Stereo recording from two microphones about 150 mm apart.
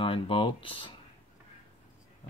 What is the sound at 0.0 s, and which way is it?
Speech, 35° left (ahead or behind).